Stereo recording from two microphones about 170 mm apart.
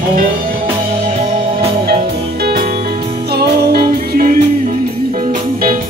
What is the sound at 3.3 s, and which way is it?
Music, 70° right (ahead or behind).